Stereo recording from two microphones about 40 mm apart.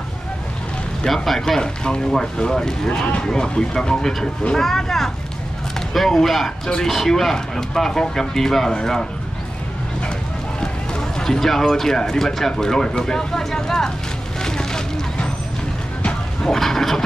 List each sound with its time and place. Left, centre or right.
1.0 s speech: centre
1.6 s speech: centre
10.6 s speech: centre
14.4 s vehicle: centre
16.4 s speech: centre